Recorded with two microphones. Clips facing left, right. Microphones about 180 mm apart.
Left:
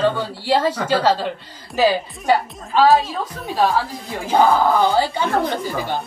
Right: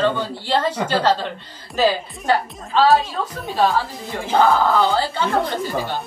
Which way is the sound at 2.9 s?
Centre (ahead or behind).